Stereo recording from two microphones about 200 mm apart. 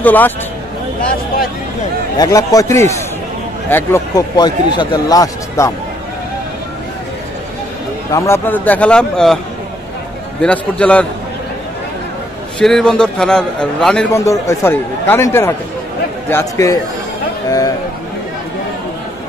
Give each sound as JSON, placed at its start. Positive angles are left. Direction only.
{"t": 0.0, "sound": "speech", "side_deg": 10}
{"t": 2.1, "sound": "speech", "side_deg": 20}
{"t": 8.1, "sound": "speech", "side_deg": 15}
{"t": 10.4, "sound": "a man's voice", "side_deg": 5}
{"t": 12.5, "sound": "a man's voice", "side_deg": 5}
{"t": 14.1, "sound": "speech", "side_deg": 15}